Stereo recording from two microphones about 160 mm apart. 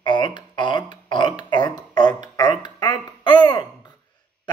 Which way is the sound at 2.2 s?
25° left (ahead or behind).